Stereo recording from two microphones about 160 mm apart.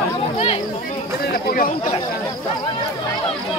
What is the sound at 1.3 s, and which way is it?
Speech, 65° left (ahead or behind).